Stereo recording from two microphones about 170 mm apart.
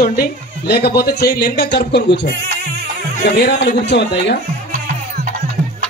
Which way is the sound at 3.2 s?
70° left (ahead or behind).